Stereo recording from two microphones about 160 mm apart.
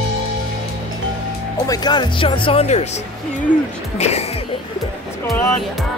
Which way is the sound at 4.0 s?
45° left (ahead or behind).